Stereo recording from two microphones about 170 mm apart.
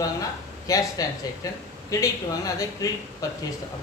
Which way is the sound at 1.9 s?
20° left (ahead or behind).